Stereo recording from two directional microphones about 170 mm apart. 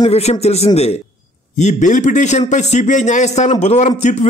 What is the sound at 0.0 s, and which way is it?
A man's voice, 40° left (ahead or behind).